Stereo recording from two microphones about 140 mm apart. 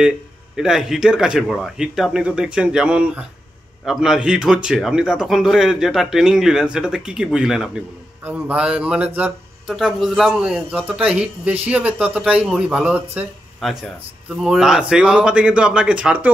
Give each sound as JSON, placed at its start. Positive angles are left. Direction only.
{"t": 0.6, "sound": "a man's voice", "side_deg": -5}
{"t": 9.8, "sound": "a man's voice", "side_deg": 0}